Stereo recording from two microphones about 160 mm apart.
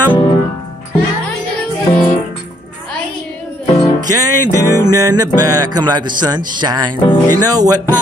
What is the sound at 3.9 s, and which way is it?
Music, 25° right (ahead or behind).